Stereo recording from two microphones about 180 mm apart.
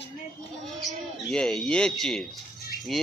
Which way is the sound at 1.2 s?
5° left (ahead or behind).